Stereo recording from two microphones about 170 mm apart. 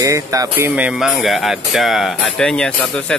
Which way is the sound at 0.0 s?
20° right (ahead or behind).